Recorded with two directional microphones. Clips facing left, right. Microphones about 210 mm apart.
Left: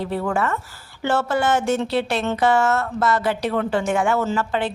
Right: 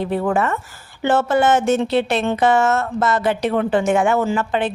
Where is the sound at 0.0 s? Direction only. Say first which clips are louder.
Right 4 dB; 20° right (ahead or behind).